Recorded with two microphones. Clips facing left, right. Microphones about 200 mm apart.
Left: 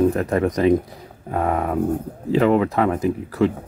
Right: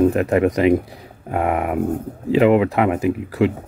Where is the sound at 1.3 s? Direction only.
20° right (ahead or behind).